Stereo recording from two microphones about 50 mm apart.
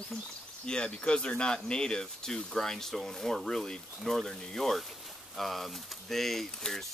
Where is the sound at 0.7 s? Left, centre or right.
Centre.